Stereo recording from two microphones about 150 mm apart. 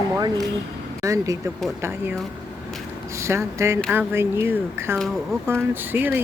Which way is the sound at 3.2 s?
20° right (ahead or behind).